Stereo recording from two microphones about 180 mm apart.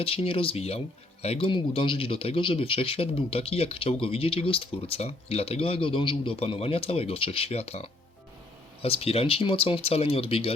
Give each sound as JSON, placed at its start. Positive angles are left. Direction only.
{"t": 0.0, "sound": "speech", "side_deg": 30}